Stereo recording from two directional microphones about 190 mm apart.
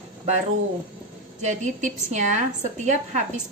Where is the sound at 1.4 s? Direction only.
40° right (ahead or behind).